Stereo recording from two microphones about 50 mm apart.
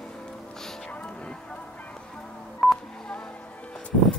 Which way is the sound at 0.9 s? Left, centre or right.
Left.